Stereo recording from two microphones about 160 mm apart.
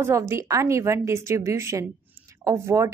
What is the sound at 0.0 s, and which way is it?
A woman's voice, 15° right (ahead or behind).